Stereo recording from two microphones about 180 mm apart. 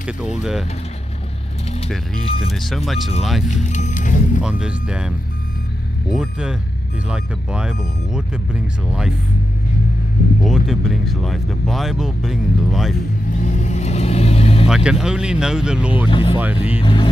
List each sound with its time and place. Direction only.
0.4 s speech: centre (ahead or behind)
2.2 s speech: 35° left (ahead or behind)
2.5 s speech: centre (ahead or behind)
3.4 s music: 40° left (ahead or behind)
4.4 s speech: 5° right (ahead or behind)
10.4 s speech: centre (ahead or behind)
13.3 s vehicle: 45° left (ahead or behind)
14.7 s speech: 5° right (ahead or behind)
16.8 s music: 25° left (ahead or behind)